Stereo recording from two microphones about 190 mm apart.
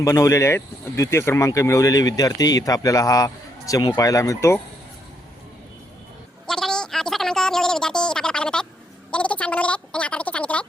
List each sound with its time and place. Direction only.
0.0 s speech: 15° left (ahead or behind)
6.5 s a sound: 5° left (ahead or behind)
9.1 s gargling: 5° left (ahead or behind)